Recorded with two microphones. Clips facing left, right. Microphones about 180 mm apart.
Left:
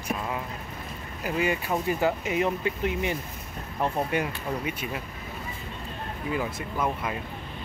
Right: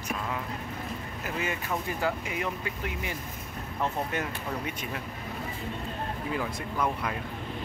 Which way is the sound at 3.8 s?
10° left (ahead or behind).